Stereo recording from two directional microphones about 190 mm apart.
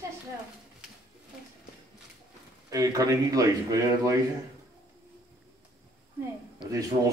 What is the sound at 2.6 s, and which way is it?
A man's voice, 15° right (ahead or behind).